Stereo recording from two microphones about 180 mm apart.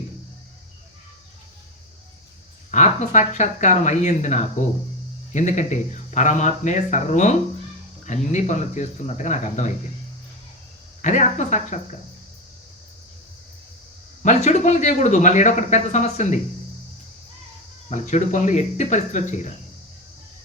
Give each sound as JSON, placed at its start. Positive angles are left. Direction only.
{"t": 2.7, "sound": "speech", "side_deg": 40}
{"t": 11.0, "sound": "speech", "side_deg": 40}
{"t": 14.2, "sound": "speech", "side_deg": 40}
{"t": 17.8, "sound": "speech", "side_deg": 40}